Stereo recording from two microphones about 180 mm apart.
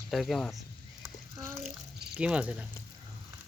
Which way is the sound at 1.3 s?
15° right (ahead or behind).